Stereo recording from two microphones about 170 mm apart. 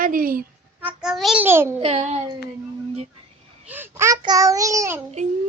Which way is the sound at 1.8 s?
35° right (ahead or behind).